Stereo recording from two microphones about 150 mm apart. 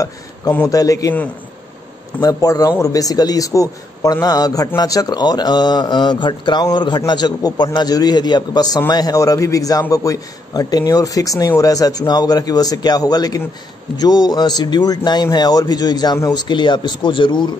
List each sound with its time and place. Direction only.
0.0 s a man's voice: 15° left (ahead or behind)
2.2 s a man's voice: 25° left (ahead or behind)